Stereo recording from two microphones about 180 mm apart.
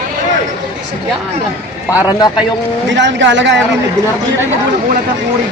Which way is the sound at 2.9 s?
85° right.